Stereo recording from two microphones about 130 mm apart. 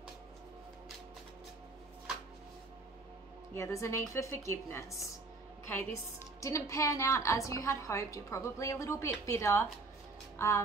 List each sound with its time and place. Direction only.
3.5 s a woman's voice: 20° left (ahead or behind)
10.4 s music: 20° left (ahead or behind)